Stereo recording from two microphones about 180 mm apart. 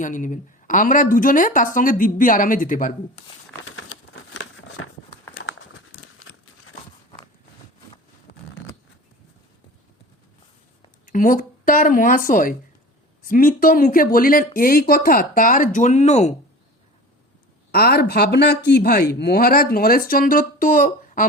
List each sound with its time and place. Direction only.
0.0 s speech: 45° left (ahead or behind)
4.1 s crumpling: 90° left
5.3 s a sound: 85° left
11.0 s speech: 50° left (ahead or behind)
17.7 s a man's voice: 60° left (ahead or behind)